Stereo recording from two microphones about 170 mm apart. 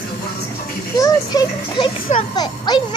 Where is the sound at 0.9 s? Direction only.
20° left (ahead or behind).